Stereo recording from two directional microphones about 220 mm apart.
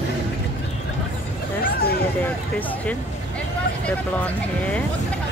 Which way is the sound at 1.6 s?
45° left (ahead or behind).